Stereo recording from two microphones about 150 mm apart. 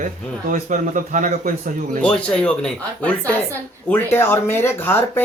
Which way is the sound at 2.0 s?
5° left (ahead or behind).